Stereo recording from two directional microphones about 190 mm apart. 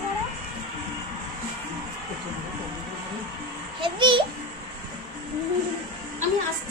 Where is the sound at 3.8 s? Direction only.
25° right (ahead or behind).